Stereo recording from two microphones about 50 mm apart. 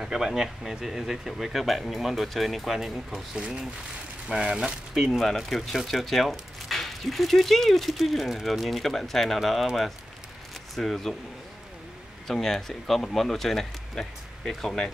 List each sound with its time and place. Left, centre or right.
0.0 s speech: centre
3.3 s speech: centre
5.2 s speech: centre
10.8 s speech: centre
12.3 s speech: centre